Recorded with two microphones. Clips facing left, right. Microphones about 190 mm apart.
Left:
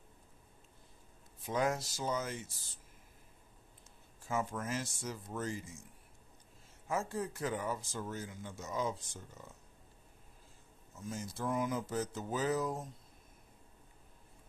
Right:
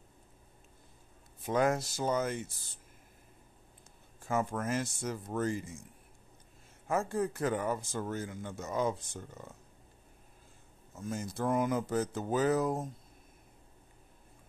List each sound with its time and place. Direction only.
1.4 s speech: 55° right (ahead or behind)
4.3 s speech: 55° right (ahead or behind)
6.9 s speech: 55° right (ahead or behind)
11.0 s speech: 55° right (ahead or behind)